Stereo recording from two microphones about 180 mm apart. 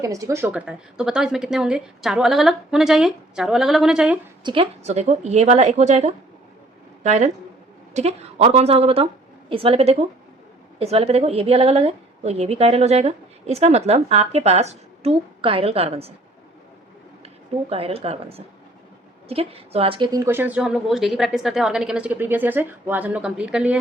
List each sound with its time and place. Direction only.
0.0 s a woman's voice: 15° right (ahead or behind)
4.4 s a woman's voice: 30° right (ahead or behind)
17.7 s a woman's voice: 30° right (ahead or behind)
20.2 s a woman's voice: 10° right (ahead or behind)